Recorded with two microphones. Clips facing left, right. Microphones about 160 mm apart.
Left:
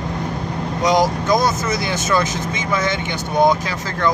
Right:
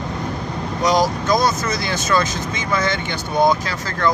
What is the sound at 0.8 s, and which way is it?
Speech, 20° left (ahead or behind).